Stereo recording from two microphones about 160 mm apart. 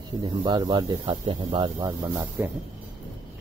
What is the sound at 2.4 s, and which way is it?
Speech, 15° right (ahead or behind).